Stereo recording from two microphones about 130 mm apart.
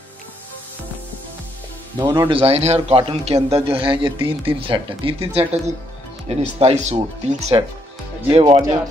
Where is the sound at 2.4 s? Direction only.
50° right (ahead or behind).